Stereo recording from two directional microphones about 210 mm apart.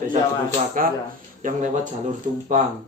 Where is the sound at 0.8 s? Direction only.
40° right (ahead or behind).